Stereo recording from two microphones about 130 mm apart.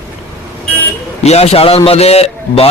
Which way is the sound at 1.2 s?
55° left (ahead or behind).